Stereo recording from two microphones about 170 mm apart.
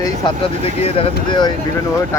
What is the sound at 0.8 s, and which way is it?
Speech, 30° left (ahead or behind).